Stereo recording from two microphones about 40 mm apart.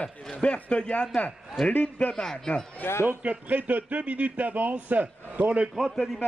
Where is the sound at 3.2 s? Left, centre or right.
Right.